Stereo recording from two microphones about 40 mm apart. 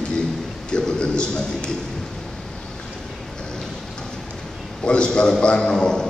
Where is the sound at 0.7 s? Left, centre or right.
Left.